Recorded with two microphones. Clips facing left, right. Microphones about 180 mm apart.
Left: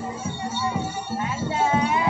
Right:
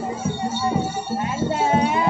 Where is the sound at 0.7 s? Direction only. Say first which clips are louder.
Right 4 dB; 40° right (ahead or behind).